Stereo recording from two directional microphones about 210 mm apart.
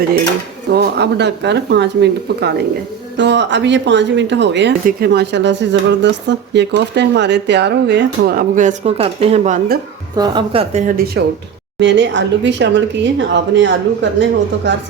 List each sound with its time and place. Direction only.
0.7 s speech: 50° right (ahead or behind); by 9.7 s 35° right (ahead or behind)
10.2 s speech: 20° right (ahead or behind); by 11.2 s 40° right (ahead or behind)
11.8 s speech: 60° right (ahead or behind)